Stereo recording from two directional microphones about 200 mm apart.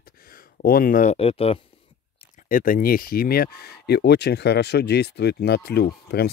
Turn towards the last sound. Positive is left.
turn(degrees=55)  # may be behind; listen again after turning